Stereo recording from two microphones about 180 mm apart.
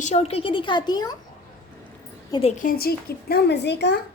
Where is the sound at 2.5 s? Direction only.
50° left (ahead or behind); by 3.9 s 70° left (ahead or behind).